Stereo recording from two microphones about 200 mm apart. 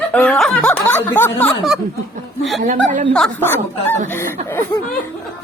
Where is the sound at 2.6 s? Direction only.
40° right (ahead or behind).